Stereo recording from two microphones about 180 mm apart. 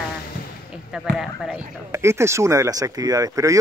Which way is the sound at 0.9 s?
Centre (ahead or behind).